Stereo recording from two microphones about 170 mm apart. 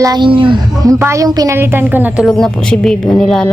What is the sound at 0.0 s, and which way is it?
A woman's voice, 25° right (ahead or behind).